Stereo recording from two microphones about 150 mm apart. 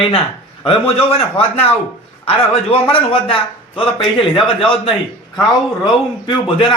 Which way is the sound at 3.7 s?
35° left (ahead or behind).